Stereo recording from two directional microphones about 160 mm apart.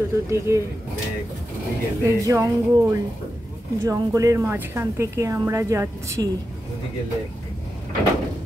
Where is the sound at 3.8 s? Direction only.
20° right (ahead or behind).